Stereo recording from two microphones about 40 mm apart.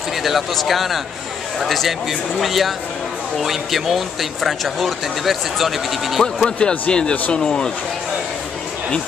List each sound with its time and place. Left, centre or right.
0.2 s speech: centre
6.2 s speech: centre